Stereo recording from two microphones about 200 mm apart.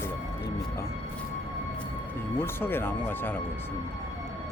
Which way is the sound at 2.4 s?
10° left (ahead or behind).